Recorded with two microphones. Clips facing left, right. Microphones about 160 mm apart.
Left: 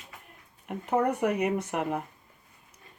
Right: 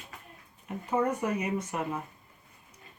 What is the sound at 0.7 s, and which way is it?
Speech, 65° left (ahead or behind).